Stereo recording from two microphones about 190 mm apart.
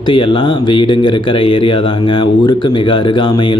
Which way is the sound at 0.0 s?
25° left (ahead or behind).